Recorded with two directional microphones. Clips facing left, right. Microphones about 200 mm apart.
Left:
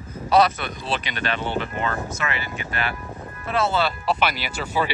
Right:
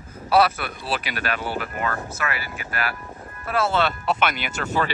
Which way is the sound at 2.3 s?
5° right (ahead or behind).